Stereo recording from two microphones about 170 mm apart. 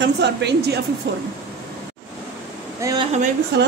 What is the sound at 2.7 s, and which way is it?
Speech, 20° right (ahead or behind).